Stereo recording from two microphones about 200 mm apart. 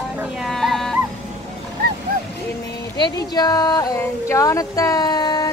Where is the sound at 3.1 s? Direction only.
20° left (ahead or behind).